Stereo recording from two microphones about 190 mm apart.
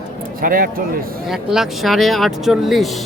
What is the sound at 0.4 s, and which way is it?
Speech, 50° right (ahead or behind).